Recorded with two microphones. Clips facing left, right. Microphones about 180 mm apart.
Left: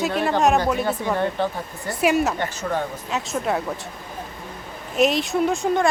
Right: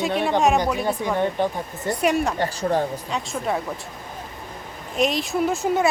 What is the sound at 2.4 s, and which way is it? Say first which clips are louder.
Speech: right 3 dB; 35° right (ahead or behind).